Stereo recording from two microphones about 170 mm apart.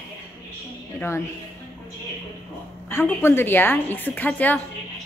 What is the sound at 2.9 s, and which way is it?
A woman's voice, 15° left (ahead or behind).